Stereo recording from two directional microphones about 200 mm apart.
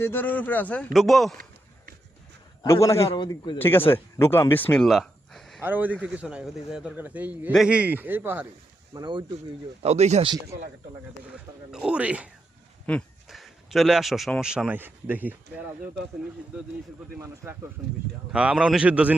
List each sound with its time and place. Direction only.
0.0 s a man's voice: 10° left (ahead or behind)
2.6 s a man's voice: 15° left (ahead or behind)
3.6 s speech: 10° left (ahead or behind); by 8.4 s 10° right (ahead or behind)
8.9 s speech: 20° right (ahead or behind)
9.8 s speech: 35° right (ahead or behind)
11.7 s speech: 5° right (ahead or behind)
17.2 s a man's voice: 10° right (ahead or behind)